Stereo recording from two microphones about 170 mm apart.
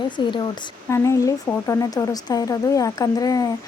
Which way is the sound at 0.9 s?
15° left (ahead or behind).